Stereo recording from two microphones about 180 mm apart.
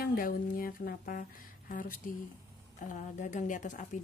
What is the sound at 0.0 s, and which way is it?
A woman's voice, 55° left (ahead or behind).